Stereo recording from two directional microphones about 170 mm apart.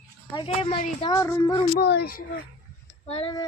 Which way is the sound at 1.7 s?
70° left (ahead or behind).